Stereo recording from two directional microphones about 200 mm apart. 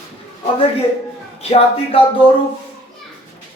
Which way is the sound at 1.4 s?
30° left (ahead or behind).